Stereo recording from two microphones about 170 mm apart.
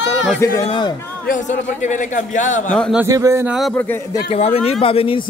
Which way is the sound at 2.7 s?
5° left (ahead or behind).